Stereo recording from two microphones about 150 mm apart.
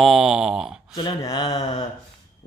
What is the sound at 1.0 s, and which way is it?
Speech, 30° left (ahead or behind).